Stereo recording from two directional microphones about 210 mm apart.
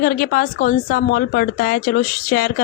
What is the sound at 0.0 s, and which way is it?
A woman's voice, 40° left (ahead or behind).